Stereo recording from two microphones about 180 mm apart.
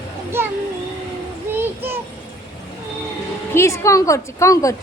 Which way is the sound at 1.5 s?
10° right (ahead or behind).